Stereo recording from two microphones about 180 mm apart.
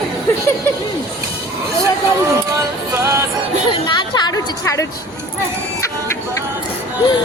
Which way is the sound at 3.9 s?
25° left (ahead or behind).